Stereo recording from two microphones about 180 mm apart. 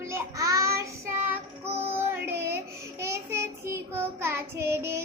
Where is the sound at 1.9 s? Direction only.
15° right (ahead or behind).